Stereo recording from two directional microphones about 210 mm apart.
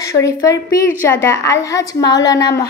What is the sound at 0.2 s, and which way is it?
A woman's voice, 15° left (ahead or behind).